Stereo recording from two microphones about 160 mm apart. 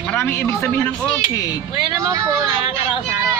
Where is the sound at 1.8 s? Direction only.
20° right (ahead or behind).